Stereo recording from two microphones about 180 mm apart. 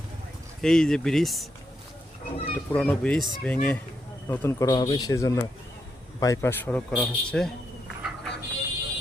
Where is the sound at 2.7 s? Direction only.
10° left (ahead or behind).